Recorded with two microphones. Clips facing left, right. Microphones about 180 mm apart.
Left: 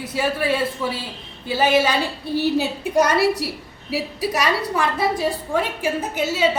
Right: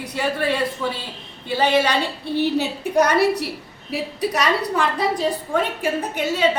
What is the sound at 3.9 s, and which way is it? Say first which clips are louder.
A woman's voice: even; 5° left (ahead or behind).